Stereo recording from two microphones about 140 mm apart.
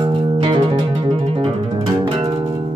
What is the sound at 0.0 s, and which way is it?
Music, 35° right (ahead or behind).